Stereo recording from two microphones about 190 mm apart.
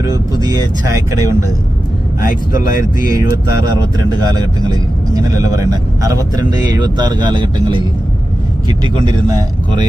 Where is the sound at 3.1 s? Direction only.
15° right (ahead or behind).